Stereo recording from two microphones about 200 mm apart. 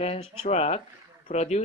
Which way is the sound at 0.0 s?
30° left (ahead or behind).